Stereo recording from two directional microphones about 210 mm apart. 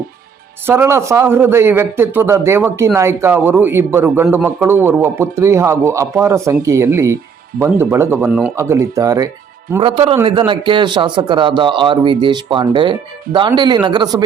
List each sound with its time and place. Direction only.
0.7 s a man's voice: 10° right (ahead or behind)